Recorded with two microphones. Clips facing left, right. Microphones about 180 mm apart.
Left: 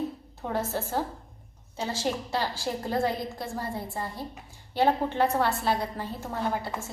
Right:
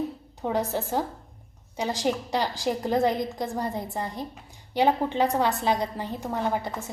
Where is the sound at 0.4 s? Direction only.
15° right (ahead or behind).